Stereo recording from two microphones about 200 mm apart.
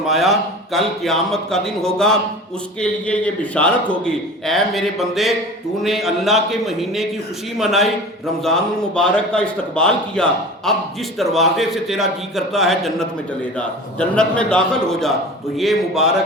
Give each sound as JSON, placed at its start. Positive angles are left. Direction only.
{"t": 0.1, "sound": "a man's voice", "side_deg": 0}